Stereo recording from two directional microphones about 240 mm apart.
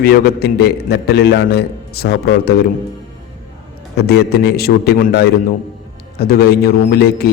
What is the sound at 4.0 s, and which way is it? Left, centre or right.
A man's voice, left.